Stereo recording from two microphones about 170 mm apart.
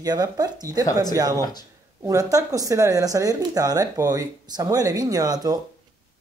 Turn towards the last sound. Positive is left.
turn(degrees=-20)  # may be behind; listen again after turning